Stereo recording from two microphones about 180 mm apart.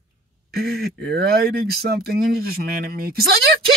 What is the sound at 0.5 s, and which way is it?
Speech, 60° right (ahead or behind).